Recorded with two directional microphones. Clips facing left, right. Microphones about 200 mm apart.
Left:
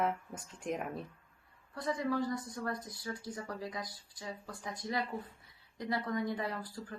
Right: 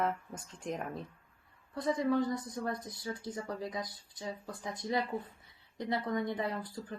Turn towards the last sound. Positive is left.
turn(degrees=-20)  # may be behind; listen again after turning